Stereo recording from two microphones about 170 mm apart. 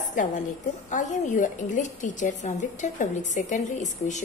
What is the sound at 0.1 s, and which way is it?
A woman's voice, 50° left (ahead or behind).